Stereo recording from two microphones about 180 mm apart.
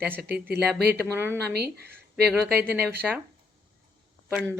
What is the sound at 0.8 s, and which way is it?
Speech, 60° right (ahead or behind).